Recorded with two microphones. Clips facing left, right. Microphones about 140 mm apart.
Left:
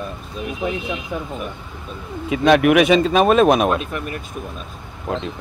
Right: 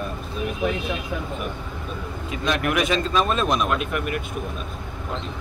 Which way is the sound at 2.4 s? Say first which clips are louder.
Left 10 dB; 80° left.